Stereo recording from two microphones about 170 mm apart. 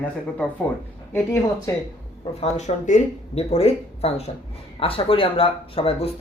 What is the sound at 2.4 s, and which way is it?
Speech, 45° left (ahead or behind).